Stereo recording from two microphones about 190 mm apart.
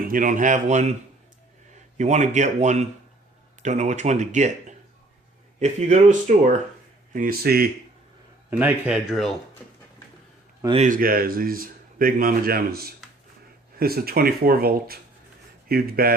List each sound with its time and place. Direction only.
0.1 s speech: 45° right (ahead or behind)
2.0 s a man's voice: 40° right (ahead or behind); by 7.7 s 55° right (ahead or behind)
8.4 s speech: 10° right (ahead or behind)
10.8 s a man's voice: 45° right (ahead or behind)